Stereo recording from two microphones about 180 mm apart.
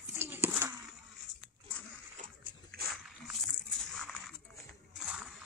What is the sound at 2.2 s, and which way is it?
Dog, 40° right (ahead or behind).